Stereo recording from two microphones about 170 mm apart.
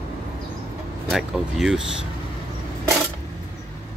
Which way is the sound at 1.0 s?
Centre (ahead or behind).